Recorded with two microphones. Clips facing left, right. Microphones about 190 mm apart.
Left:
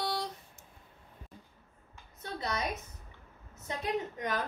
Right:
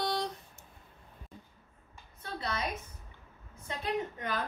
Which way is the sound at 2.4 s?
20° left (ahead or behind).